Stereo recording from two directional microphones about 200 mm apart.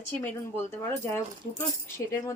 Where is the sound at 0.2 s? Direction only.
15° left (ahead or behind).